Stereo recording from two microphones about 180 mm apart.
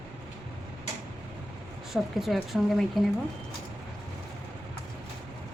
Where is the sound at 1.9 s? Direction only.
Centre (ahead or behind).